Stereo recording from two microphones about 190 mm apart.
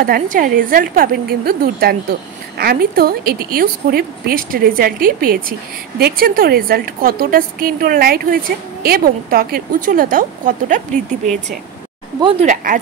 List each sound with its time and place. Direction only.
0.0 s a woman's voice: 50° right (ahead or behind)
12.2 s speech: 30° right (ahead or behind)